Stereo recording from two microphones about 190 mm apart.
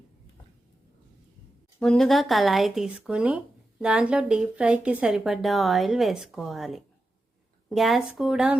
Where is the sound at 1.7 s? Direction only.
Centre (ahead or behind).